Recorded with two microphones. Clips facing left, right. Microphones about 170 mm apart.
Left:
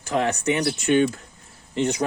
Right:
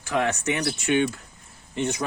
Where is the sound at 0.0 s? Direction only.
35° left (ahead or behind).